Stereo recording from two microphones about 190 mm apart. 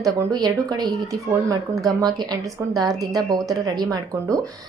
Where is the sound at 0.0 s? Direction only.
20° right (ahead or behind).